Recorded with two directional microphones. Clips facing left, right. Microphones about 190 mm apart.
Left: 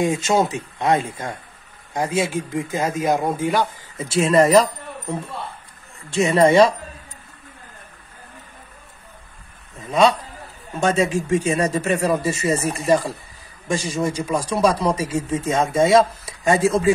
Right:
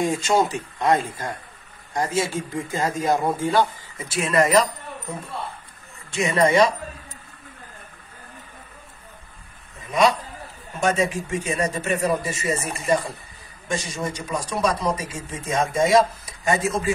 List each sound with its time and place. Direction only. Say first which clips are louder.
0.0 s speech: left 2 dB; 20° left (ahead or behind)
4.1 s speech: left 5 dB; 30° left (ahead or behind)
6.1 s speech: left 4 dB; 30° left (ahead or behind)
10.8 s speech: left 3 dB; 30° left (ahead or behind)